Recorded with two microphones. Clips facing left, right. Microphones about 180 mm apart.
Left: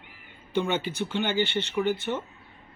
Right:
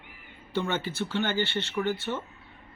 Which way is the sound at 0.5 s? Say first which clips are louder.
Left 3 dB; 20° left (ahead or behind).